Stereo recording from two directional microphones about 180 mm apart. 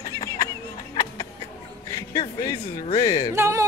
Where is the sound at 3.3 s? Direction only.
15° right (ahead or behind).